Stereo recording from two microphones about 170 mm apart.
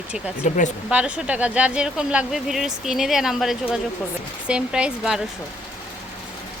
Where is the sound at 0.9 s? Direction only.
5° right (ahead or behind).